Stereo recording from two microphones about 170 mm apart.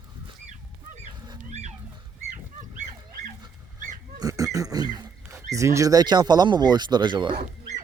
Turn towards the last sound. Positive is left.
turn(degrees=-25)  # may be behind; listen again after turning